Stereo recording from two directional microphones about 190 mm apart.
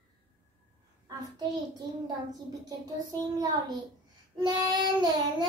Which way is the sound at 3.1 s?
20° right (ahead or behind).